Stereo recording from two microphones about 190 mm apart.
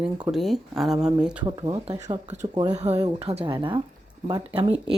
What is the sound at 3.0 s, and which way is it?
Speech, 20° right (ahead or behind).